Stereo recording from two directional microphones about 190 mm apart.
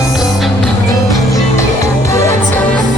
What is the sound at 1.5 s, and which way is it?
Music, 15° left (ahead or behind).